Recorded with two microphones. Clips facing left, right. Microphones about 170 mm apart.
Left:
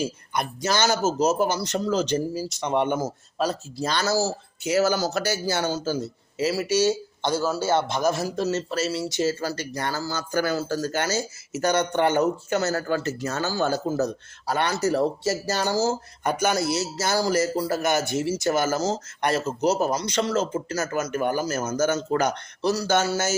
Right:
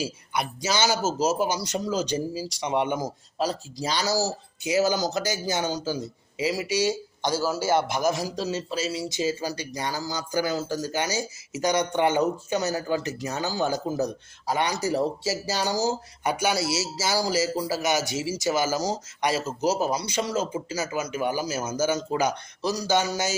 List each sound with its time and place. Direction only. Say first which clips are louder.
0.0 s speech: left 2 dB; 5° right (ahead or behind)
17.8 s speech: left 2 dB; 55° left (ahead or behind)
18.6 s speech: left 2 dB; 10° right (ahead or behind)